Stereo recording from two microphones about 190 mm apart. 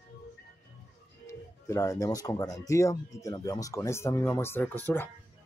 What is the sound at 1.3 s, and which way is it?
Speech, 15° left (ahead or behind).